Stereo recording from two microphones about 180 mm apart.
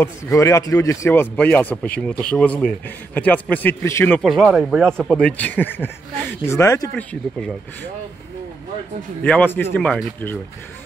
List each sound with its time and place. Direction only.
0.0 s speech: 15° left (ahead or behind)
4.2 s speech: centre (ahead or behind); by 7.1 s 15° left (ahead or behind)
9.2 s speech: 10° left (ahead or behind)